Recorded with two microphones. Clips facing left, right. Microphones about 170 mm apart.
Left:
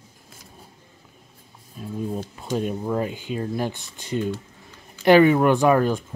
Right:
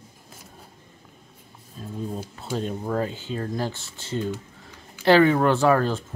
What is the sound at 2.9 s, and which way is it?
Speech, 15° left (ahead or behind).